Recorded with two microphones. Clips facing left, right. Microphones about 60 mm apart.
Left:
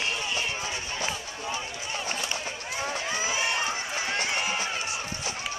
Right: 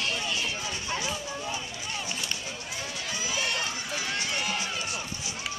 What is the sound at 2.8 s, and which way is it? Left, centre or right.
Run, left.